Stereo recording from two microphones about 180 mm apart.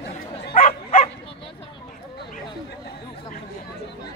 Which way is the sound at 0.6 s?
50° left (ahead or behind).